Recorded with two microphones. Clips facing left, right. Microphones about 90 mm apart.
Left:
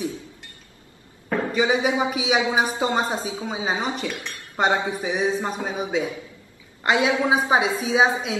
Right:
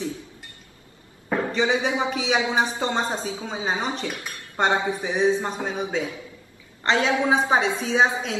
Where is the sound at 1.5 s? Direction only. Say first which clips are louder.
Left 3 dB; 10° left (ahead or behind).